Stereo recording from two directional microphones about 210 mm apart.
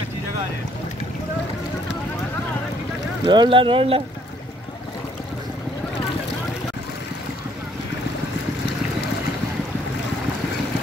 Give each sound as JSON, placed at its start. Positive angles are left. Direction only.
{"t": 3.3, "sound": "speech", "side_deg": -25}